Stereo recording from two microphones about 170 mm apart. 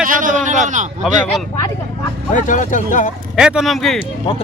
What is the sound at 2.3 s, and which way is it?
Speech, 50° left (ahead or behind).